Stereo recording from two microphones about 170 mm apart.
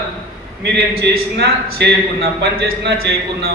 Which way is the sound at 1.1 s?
70° right (ahead or behind).